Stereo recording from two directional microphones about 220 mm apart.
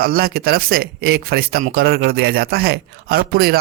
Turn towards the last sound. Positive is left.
turn(degrees=-45)  # may be behind; listen again after turning